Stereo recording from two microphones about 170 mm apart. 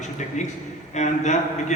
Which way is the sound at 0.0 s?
45° left (ahead or behind).